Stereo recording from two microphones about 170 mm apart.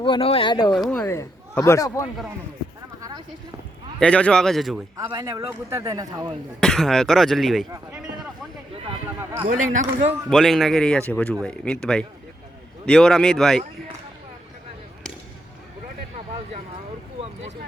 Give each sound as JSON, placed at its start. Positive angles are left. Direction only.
{"t": 0.0, "sound": "speech", "side_deg": 30}
{"t": 0.8, "sound": "speech", "side_deg": 5}
{"t": 1.0, "sound": "a man's voice", "side_deg": 15}
{"t": 4.0, "sound": "speech", "side_deg": 5}
{"t": 4.9, "sound": "a man's voice", "side_deg": -20}
{"t": 6.6, "sound": "speech", "side_deg": 0}
{"t": 9.5, "sound": "a man's voice", "side_deg": -45}
{"t": 10.2, "sound": "speech", "side_deg": 0}